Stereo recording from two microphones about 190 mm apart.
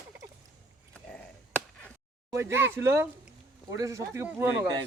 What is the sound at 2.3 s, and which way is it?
Speech, 15° right (ahead or behind).